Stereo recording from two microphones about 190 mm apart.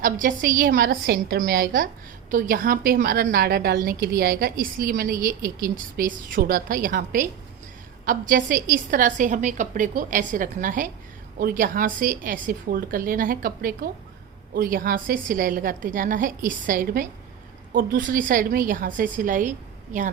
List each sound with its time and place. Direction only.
0.0 s a woman's voice: 45° right (ahead or behind)